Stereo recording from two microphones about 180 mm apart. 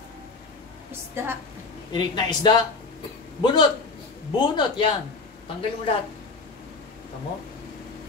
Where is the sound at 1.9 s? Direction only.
25° left (ahead or behind).